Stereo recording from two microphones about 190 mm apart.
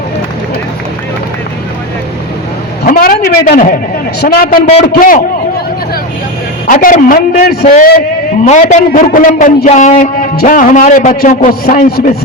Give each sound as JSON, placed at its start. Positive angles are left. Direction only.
{"t": 2.8, "sound": "a sound", "side_deg": 50}
{"t": 4.2, "sound": "a man's voice", "side_deg": 50}
{"t": 6.7, "sound": "a man's voice", "side_deg": 45}